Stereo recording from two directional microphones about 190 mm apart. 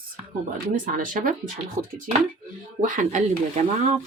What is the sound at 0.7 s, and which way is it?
Speech, 45° right (ahead or behind).